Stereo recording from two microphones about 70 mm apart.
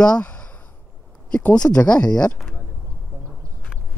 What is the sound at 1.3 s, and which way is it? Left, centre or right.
Speech, centre.